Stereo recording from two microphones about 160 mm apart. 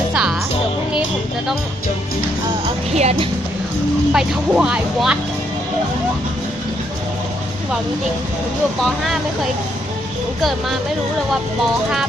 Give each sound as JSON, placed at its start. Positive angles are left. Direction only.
{"t": 0.1, "sound": "music", "side_deg": -5}
{"t": 2.9, "sound": "speech", "side_deg": -45}
{"t": 4.1, "sound": "speech", "side_deg": -5}